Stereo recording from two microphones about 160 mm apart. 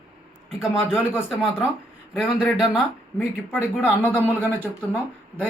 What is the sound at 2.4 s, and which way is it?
Speech, 10° left (ahead or behind).